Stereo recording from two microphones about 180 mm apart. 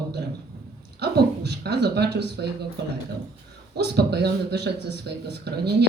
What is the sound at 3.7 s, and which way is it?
Speech, 65° right (ahead or behind).